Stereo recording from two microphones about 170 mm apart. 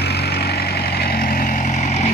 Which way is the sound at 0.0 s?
70° left (ahead or behind).